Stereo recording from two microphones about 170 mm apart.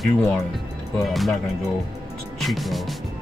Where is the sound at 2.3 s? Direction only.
Centre (ahead or behind).